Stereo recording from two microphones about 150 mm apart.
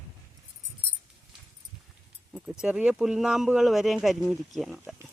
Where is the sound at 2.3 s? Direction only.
5° right (ahead or behind).